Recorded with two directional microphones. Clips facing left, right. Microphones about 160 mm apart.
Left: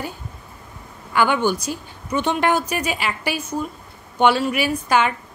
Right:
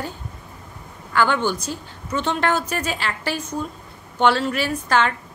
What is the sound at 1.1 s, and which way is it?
A woman's voice, 15° left (ahead or behind).